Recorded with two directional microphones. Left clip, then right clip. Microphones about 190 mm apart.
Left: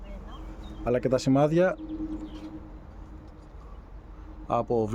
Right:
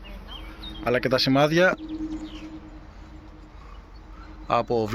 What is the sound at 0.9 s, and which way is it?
Speech, 10° left (ahead or behind).